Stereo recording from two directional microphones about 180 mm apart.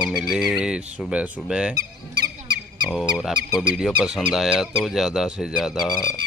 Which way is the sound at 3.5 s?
5° right (ahead or behind).